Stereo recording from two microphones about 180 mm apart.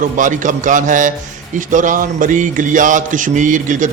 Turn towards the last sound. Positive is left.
turn(degrees=-45)  # may be behind; listen again after turning